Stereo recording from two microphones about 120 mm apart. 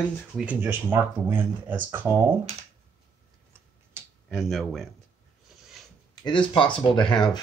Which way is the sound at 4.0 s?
20° right (ahead or behind).